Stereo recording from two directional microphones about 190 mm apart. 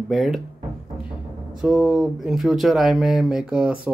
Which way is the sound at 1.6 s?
Centre (ahead or behind).